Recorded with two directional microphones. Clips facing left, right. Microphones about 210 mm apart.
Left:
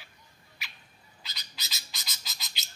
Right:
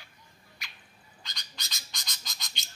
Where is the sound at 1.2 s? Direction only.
5° left (ahead or behind).